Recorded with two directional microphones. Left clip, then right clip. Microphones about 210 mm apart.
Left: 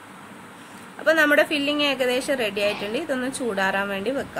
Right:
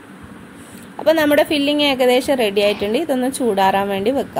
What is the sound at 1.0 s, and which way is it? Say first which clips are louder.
A woman's voice: right 4 dB; 15° right (ahead or behind).